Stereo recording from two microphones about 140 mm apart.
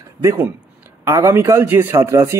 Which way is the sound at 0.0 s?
20° right (ahead or behind).